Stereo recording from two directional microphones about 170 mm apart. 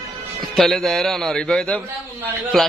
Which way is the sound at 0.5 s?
Centre (ahead or behind).